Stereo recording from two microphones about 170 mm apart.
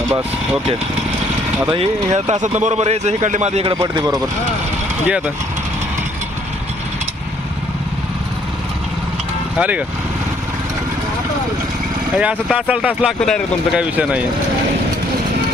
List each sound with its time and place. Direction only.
0.1 s speech: 10° right (ahead or behind)
1.7 s a man's voice: 35° right (ahead or behind)
5.0 s speech: 5° right (ahead or behind)
9.6 s speech: 10° right (ahead or behind)
12.1 s speech: 5° right (ahead or behind)